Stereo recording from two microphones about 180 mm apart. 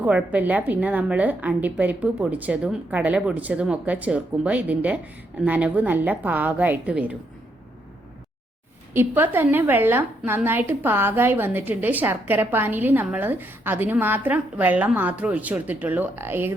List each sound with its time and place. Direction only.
0.0 s a woman's voice: 10° right (ahead or behind)
8.9 s a woman's voice: 10° right (ahead or behind)